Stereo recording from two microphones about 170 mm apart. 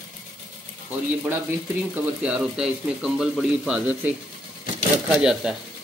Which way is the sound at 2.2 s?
5° right (ahead or behind).